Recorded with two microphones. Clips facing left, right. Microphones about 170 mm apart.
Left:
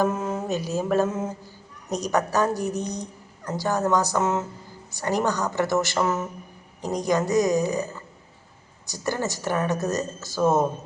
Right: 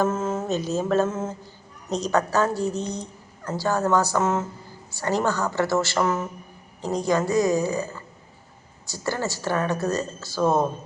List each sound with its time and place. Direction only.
0.0 s mantra: 15° left (ahead or behind)
1.9 s a woman's voice: 15° left (ahead or behind)